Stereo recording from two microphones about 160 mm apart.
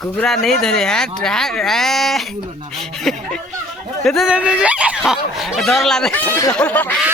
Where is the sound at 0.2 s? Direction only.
5° left (ahead or behind).